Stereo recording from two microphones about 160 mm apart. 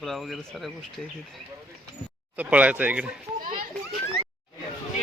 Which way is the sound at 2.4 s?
10° right (ahead or behind).